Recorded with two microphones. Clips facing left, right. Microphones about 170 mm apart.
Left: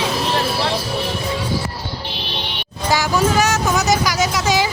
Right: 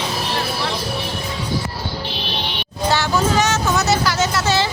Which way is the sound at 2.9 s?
10° left (ahead or behind).